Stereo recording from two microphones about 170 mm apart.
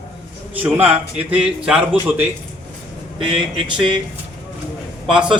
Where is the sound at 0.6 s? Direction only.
10° right (ahead or behind).